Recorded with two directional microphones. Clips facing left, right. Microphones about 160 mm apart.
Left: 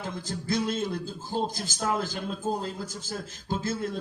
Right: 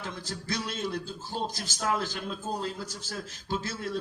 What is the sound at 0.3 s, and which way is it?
Speech, 50° left (ahead or behind).